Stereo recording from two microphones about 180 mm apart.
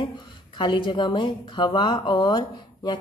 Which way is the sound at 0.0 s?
25° left (ahead or behind).